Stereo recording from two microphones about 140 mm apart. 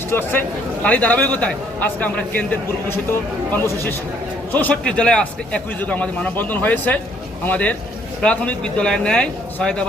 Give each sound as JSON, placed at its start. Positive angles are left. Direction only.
{"t": 0.1, "sound": "a man's voice", "side_deg": 15}